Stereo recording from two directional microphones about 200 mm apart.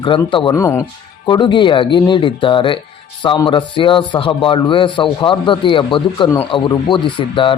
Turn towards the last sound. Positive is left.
turn(degrees=25)  # may be behind; listen again after turning